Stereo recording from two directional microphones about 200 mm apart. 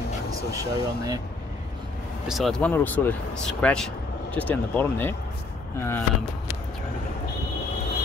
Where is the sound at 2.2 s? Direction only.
Centre (ahead or behind).